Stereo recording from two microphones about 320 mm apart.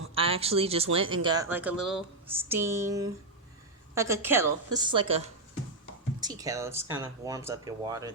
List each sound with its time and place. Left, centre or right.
0.1 s speech: centre